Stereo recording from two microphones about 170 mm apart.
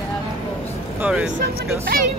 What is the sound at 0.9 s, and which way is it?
Speech, 5° right (ahead or behind).